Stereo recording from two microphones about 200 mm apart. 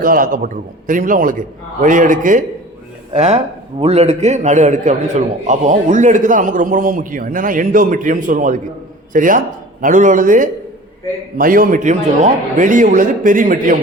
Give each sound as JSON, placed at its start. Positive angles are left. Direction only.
{"t": 0.0, "sound": "a man's voice", "side_deg": -45}